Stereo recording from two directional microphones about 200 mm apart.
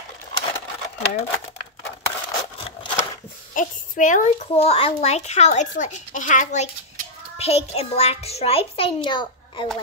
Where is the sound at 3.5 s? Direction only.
40° left (ahead or behind).